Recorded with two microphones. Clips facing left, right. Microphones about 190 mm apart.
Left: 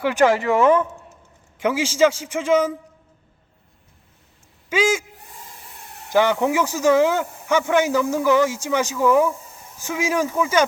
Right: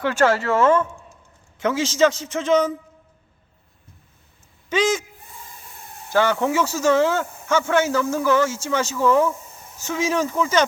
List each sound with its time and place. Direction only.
0.0 s speech: 15° left (ahead or behind)
4.7 s speech: 10° left (ahead or behind)
6.1 s speech: 15° left (ahead or behind)